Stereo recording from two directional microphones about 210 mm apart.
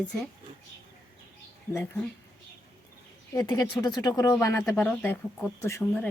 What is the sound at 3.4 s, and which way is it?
Speech, 20° left (ahead or behind).